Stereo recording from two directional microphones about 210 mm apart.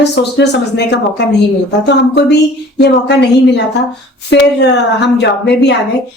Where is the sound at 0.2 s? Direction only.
55° left (ahead or behind).